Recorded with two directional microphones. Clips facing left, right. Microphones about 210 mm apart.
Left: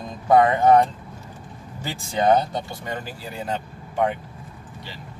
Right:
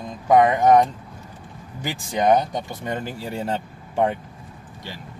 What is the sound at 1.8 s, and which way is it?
Speech, 15° right (ahead or behind).